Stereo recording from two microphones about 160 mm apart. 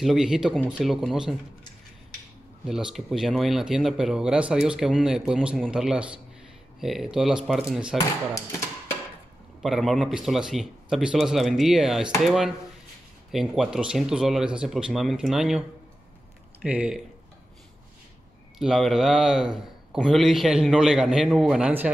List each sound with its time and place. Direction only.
0.0 s speech: centre (ahead or behind)
2.6 s a man's voice: 5° right (ahead or behind)
9.6 s speech: centre (ahead or behind)
13.3 s speech: 5° right (ahead or behind)
16.6 s a man's voice: 10° right (ahead or behind)
18.6 s speech: centre (ahead or behind)